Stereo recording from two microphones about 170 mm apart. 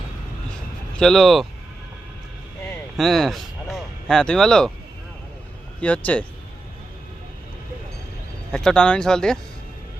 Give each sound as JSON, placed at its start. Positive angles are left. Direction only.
{"t": 0.9, "sound": "speech", "side_deg": 5}
{"t": 3.0, "sound": "speech", "side_deg": 0}
{"t": 5.8, "sound": "speech", "side_deg": 10}
{"t": 8.5, "sound": "speech", "side_deg": 5}